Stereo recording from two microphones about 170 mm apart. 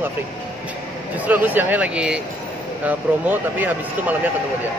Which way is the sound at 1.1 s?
10° right (ahead or behind).